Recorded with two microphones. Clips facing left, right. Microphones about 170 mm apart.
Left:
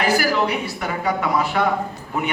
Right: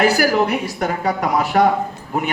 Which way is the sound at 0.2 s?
50° right (ahead or behind).